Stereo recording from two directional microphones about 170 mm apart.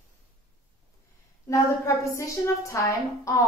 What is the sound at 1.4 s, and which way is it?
A woman's voice, 20° left (ahead or behind).